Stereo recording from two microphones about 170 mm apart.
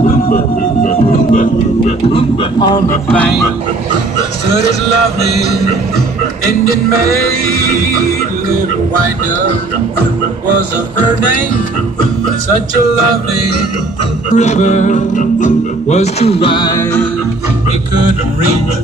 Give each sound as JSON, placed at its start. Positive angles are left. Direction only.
{"t": 0.0, "sound": "music", "side_deg": 55}
{"t": 2.1, "sound": "speech", "side_deg": 25}
{"t": 7.4, "sound": "music", "side_deg": -60}
{"t": 14.3, "sound": "music", "side_deg": 45}